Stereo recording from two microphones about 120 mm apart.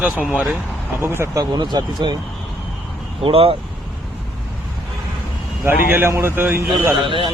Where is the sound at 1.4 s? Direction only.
35° right (ahead or behind).